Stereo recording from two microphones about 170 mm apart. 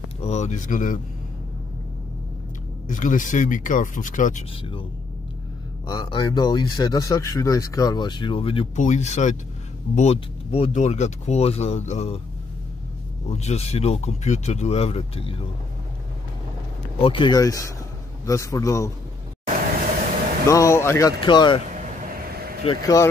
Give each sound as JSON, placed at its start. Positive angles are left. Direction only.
{"t": 0.2, "sound": "speech", "side_deg": 40}
{"t": 2.9, "sound": "speech", "side_deg": 50}
{"t": 5.9, "sound": "speech", "side_deg": 25}
{"t": 8.7, "sound": "speech", "side_deg": 45}
{"t": 13.3, "sound": "speech", "side_deg": 40}
{"t": 17.0, "sound": "speech", "side_deg": 30}
{"t": 20.4, "sound": "speech", "side_deg": 15}
{"t": 21.2, "sound": "speech", "side_deg": 25}
{"t": 21.7, "sound": "vehicle", "side_deg": -45}
{"t": 22.7, "sound": "speech", "side_deg": 20}